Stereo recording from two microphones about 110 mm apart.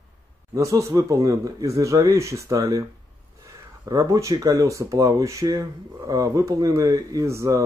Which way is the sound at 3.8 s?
30° right (ahead or behind).